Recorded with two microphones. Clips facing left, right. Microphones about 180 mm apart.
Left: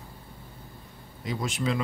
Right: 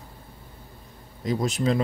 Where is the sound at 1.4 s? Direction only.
40° right (ahead or behind).